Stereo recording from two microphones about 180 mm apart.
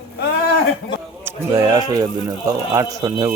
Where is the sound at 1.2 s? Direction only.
20° right (ahead or behind).